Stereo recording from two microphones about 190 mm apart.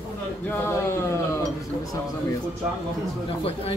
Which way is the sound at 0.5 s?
15° left (ahead or behind).